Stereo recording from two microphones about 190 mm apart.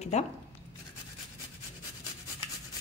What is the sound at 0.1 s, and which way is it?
Speech, 35° left (ahead or behind).